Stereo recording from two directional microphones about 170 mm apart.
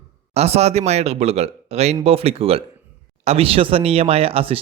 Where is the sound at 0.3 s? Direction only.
40° right (ahead or behind).